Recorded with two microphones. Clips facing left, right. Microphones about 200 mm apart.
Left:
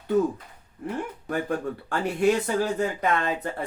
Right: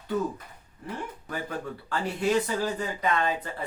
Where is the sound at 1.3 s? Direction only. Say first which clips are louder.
Left 7 dB; 50° left (ahead or behind).